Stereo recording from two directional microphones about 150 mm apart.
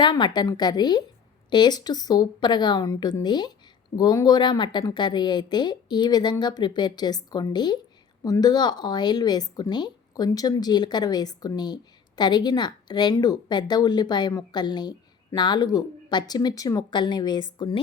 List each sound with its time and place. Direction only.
0.0 s a woman's voice: 30° left (ahead or behind)